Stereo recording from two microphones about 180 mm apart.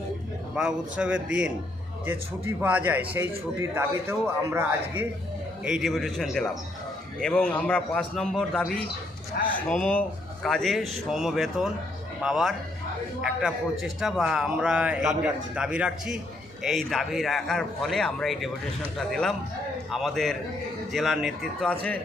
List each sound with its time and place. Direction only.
0.5 s a man's voice: 5° right (ahead or behind)
5.6 s a man's voice: centre (ahead or behind)